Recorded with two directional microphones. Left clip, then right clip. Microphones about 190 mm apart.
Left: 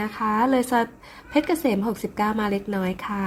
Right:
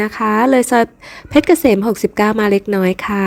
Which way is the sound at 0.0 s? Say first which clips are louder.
Right 8 dB; 40° right (ahead or behind).